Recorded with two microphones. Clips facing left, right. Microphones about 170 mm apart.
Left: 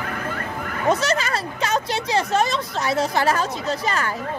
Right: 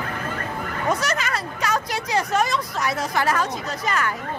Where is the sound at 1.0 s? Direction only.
30° left (ahead or behind).